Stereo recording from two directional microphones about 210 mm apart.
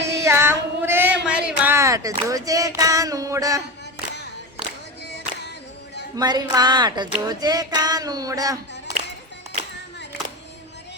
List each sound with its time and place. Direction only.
0.0 s child singing: 15° right (ahead or behind)
6.1 s child singing: 20° right (ahead or behind)